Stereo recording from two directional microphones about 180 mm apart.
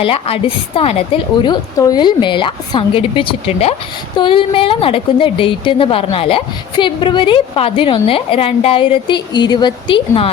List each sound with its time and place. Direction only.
0.0 s a woman's voice: 30° left (ahead or behind)